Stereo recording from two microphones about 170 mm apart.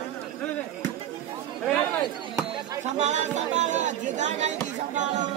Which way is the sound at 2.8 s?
45° right (ahead or behind).